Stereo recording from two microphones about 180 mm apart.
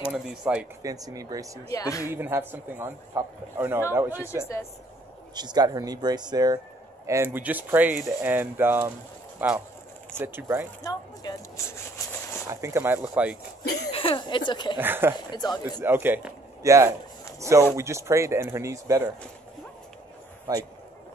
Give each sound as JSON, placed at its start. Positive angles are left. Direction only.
{"t": 0.1, "sound": "speech", "side_deg": -5}
{"t": 0.8, "sound": "speech", "side_deg": -20}
{"t": 1.7, "sound": "speech", "side_deg": 20}
{"t": 2.0, "sound": "speech", "side_deg": -10}
{"t": 5.3, "sound": "speech", "side_deg": -25}
{"t": 7.1, "sound": "speech", "side_deg": -10}
{"t": 10.8, "sound": "a sound", "side_deg": 20}
{"t": 12.4, "sound": "speech", "side_deg": -15}
{"t": 13.9, "sound": "speech", "side_deg": 30}
{"t": 14.8, "sound": "speech", "side_deg": -10}
{"t": 15.1, "sound": "speech", "side_deg": 20}
{"t": 15.8, "sound": "speech", "side_deg": -10}